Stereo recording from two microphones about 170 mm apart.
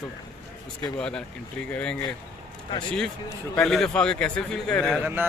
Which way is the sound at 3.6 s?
5° left (ahead or behind).